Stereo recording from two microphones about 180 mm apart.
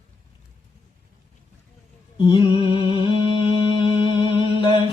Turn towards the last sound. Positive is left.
turn(degrees=25)  # may be behind; listen again after turning